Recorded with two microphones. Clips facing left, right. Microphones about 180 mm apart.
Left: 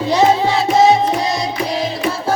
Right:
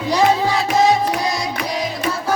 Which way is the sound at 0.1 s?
25° left (ahead or behind).